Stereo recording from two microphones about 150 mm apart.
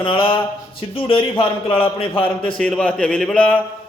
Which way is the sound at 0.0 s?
35° left (ahead or behind).